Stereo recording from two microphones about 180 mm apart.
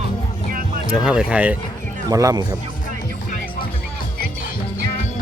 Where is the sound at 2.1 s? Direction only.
20° right (ahead or behind).